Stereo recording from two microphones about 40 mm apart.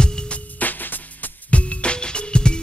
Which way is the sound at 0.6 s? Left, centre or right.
Left.